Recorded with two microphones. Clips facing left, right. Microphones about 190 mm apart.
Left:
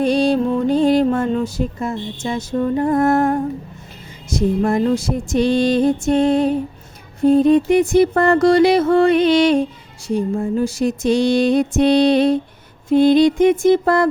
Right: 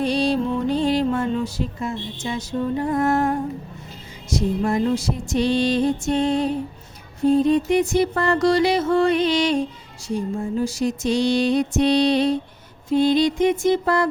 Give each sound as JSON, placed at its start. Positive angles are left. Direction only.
{"t": 0.0, "sound": "music", "side_deg": 50}
{"t": 10.6, "sound": "music", "side_deg": 55}